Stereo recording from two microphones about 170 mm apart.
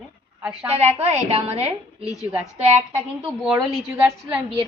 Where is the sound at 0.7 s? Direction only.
40° right (ahead or behind).